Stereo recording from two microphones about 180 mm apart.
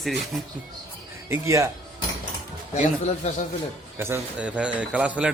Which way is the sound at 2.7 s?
40° left (ahead or behind).